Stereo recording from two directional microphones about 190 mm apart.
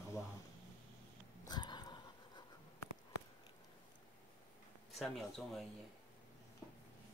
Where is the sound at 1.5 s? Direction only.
20° left (ahead or behind).